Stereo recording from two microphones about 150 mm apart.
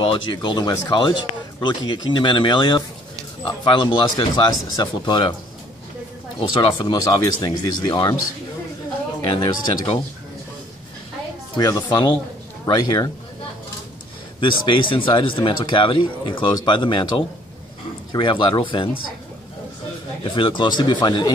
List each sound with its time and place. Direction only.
0.0 s speech: 35° left (ahead or behind)
6.5 s speech: 35° left (ahead or behind)
9.2 s speech: 30° left (ahead or behind)
11.5 s speech: 30° left (ahead or behind)
14.4 s speech: 35° left (ahead or behind)
18.1 s speech: 35° left (ahead or behind)
20.2 s speech: 35° left (ahead or behind)